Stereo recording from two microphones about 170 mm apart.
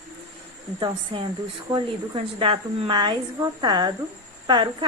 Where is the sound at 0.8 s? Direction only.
30° right (ahead or behind).